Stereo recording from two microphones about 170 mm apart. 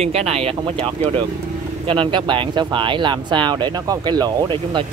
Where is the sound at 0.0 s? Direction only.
35° right (ahead or behind).